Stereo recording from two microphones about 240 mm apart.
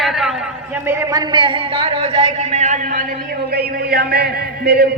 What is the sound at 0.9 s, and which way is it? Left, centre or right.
A man's voice, centre.